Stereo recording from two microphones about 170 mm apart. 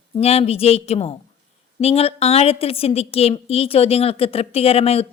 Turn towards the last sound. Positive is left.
turn(degrees=35)  # may be behind; listen again after turning